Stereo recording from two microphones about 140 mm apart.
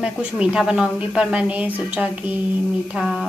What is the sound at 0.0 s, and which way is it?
A woman's voice, 5° right (ahead or behind).